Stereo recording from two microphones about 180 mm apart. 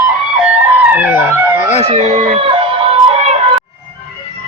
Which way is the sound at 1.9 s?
35° right (ahead or behind).